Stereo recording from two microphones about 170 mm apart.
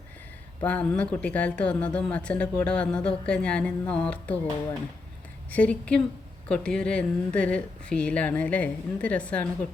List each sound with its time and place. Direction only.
0.6 s speech: 10° left (ahead or behind)
5.5 s speech: 10° left (ahead or behind)